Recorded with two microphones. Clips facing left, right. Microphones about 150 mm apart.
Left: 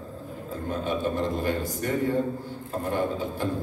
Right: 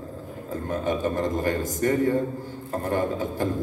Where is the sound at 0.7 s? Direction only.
45° right (ahead or behind).